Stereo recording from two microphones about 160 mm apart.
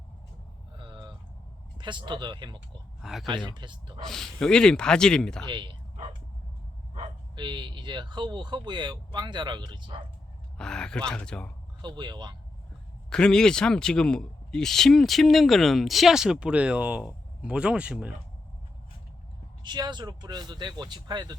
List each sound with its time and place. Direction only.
0.8 s a sound: 25° right (ahead or behind)
1.8 s speech: 30° right (ahead or behind)
3.0 s speech: centre (ahead or behind)
3.5 s speech: 30° right (ahead or behind)
4.0 s speech: centre (ahead or behind)
5.5 s bow-wow: 30° right (ahead or behind)
7.3 s speech: 30° right (ahead or behind)
10.6 s speech: 5° left (ahead or behind)
11.8 s speech: 30° right (ahead or behind)
13.1 s speech: 5° left (ahead or behind)
19.6 s speech: 25° right (ahead or behind)